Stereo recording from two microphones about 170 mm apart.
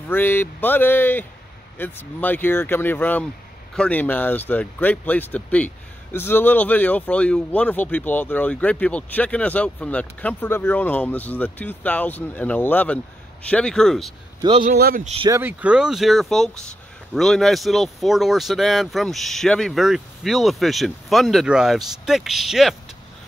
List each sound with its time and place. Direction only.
0.1 s speech: 10° left (ahead or behind)
14.8 s a man's voice: 65° right (ahead or behind)
15.2 s speech: 15° right (ahead or behind)